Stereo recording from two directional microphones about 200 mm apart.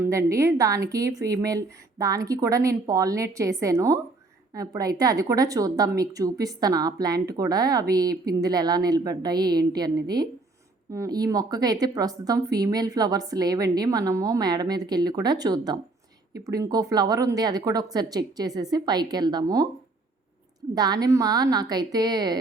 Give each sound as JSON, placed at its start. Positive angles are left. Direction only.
{"t": 0.0, "sound": "a woman's voice", "side_deg": -15}
{"t": 20.7, "sound": "a woman's voice", "side_deg": -20}